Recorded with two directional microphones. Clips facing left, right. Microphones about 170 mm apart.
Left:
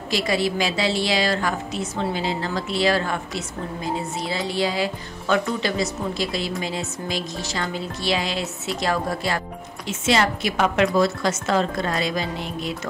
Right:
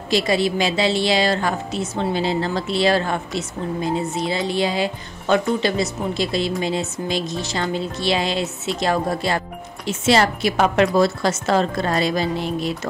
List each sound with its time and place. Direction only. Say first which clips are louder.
0.1 s a woman's voice: right 4 dB; 25° right (ahead or behind)